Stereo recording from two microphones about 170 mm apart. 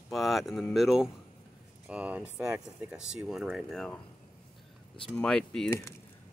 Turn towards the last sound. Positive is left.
turn(degrees=15)  # may be behind; listen again after turning